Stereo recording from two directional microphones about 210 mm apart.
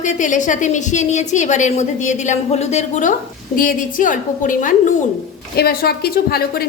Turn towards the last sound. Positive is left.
turn(degrees=45)  # may be behind; listen again after turning